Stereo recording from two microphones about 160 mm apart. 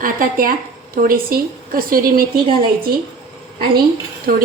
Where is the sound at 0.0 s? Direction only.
60° right (ahead or behind).